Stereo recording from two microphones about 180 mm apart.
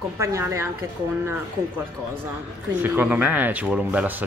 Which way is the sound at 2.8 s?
10° right (ahead or behind).